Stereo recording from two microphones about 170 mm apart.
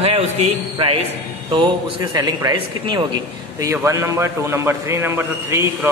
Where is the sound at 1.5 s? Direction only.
25° right (ahead or behind).